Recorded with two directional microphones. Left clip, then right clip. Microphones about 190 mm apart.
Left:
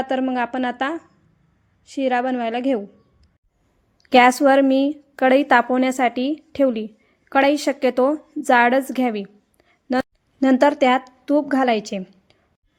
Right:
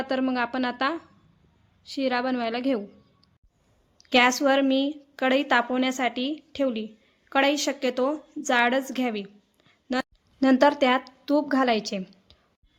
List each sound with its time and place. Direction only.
0.0 s a woman's voice: 15° left (ahead or behind)
4.1 s speech: 35° left (ahead or behind)
8.4 s a sound: 35° left (ahead or behind)
10.5 s a woman's voice: 20° left (ahead or behind)